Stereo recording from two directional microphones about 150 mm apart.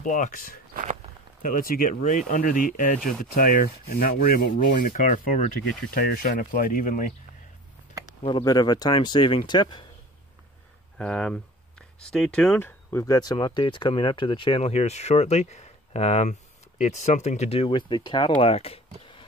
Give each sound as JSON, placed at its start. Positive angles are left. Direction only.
{"t": 0.0, "sound": "rub", "side_deg": 60}
{"t": 1.5, "sound": "speech", "side_deg": 75}
{"t": 3.3, "sound": "rub", "side_deg": 65}
{"t": 8.2, "sound": "speech", "side_deg": 35}
{"t": 11.0, "sound": "speech", "side_deg": 5}